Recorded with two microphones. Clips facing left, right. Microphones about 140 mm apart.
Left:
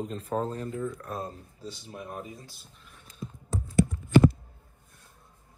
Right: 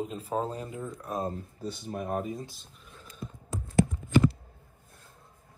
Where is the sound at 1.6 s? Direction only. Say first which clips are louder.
Right 6 dB; 50° right (ahead or behind).